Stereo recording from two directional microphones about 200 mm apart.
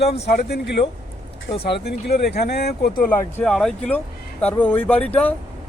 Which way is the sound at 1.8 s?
55° left (ahead or behind).